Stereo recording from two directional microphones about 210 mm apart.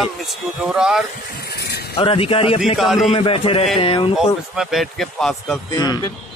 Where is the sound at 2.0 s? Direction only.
25° left (ahead or behind).